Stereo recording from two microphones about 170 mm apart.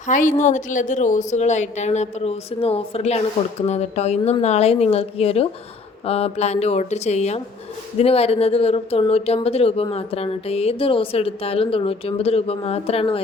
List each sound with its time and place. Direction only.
0.1 s a woman's voice: 45° left (ahead or behind)